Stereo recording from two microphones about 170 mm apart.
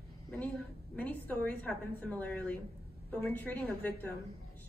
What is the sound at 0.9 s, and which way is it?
A woman's voice, 10° left (ahead or behind).